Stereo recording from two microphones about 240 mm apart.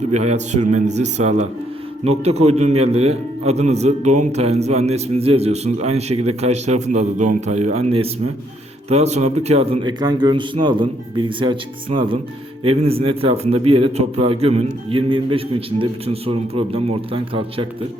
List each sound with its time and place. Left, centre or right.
0.1 s a man's voice: right